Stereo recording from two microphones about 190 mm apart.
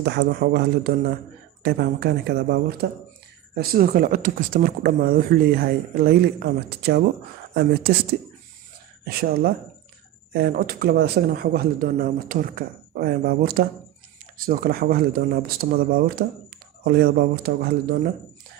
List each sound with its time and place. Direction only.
0.0 s speech: 65° right (ahead or behind)
9.0 s speech: 55° right (ahead or behind)